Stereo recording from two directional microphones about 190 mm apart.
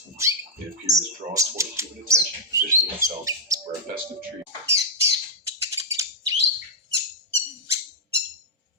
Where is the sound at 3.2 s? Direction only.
15° right (ahead or behind).